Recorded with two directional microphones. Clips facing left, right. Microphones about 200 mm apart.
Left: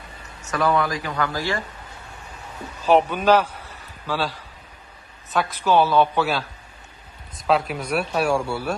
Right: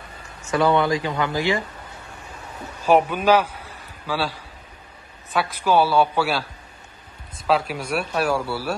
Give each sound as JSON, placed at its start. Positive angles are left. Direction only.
{"t": 0.5, "sound": "speech", "side_deg": -25}
{"t": 2.8, "sound": "a man's voice", "side_deg": -10}
{"t": 7.4, "sound": "speech", "side_deg": 0}